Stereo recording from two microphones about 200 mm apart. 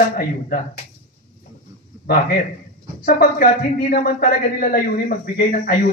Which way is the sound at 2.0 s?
50° left (ahead or behind).